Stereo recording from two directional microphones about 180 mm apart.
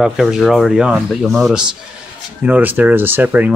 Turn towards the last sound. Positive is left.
turn(degrees=-10)  # may be behind; listen again after turning